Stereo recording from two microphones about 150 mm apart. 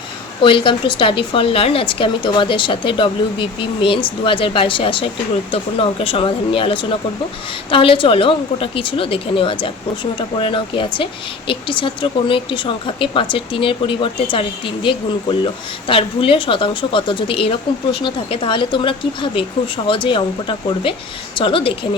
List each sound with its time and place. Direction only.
0.4 s speech: 35° left (ahead or behind)